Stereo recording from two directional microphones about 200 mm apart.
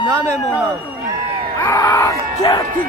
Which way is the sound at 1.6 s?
15° left (ahead or behind).